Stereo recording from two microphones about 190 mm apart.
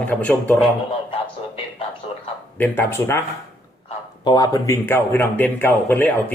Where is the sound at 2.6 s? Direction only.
10° left (ahead or behind).